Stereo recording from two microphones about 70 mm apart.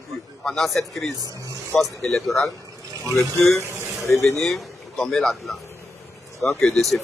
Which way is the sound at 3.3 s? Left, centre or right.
Left.